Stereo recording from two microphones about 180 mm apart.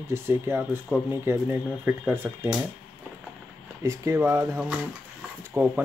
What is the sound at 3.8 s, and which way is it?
Speech, 15° right (ahead or behind).